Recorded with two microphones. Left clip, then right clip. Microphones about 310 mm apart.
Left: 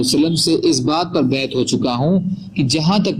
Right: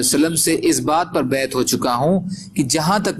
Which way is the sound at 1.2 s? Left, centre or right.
Right.